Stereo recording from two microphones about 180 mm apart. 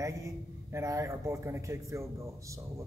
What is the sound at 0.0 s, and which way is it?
A man's voice, 15° right (ahead or behind).